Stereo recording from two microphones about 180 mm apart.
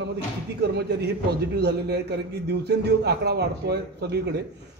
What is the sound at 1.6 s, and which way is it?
A man's voice, 70° right (ahead or behind).